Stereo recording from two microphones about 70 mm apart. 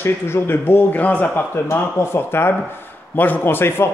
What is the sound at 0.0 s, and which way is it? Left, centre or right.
A man's voice, left.